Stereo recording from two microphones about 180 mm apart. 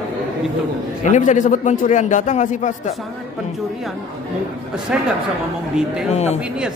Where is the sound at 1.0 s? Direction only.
45° left (ahead or behind).